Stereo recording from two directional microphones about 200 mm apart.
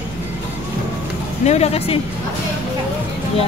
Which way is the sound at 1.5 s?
30° left (ahead or behind).